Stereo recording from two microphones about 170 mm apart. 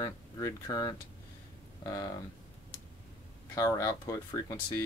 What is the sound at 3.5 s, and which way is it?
Speech, 20° left (ahead or behind).